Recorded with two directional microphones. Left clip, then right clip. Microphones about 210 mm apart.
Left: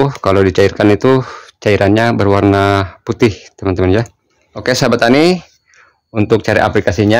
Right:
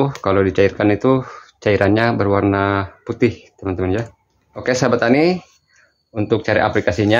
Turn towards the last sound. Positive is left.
turn(degrees=45)  # may be behind; listen again after turning